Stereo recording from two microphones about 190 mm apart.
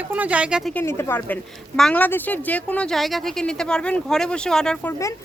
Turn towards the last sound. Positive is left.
turn(degrees=5)  # may be behind; listen again after turning